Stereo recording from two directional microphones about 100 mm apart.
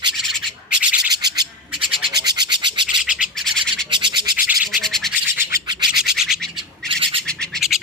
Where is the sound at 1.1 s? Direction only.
40° right (ahead or behind).